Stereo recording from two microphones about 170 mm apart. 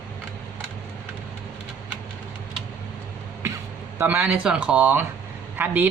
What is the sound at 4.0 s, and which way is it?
A man's voice, 10° right (ahead or behind).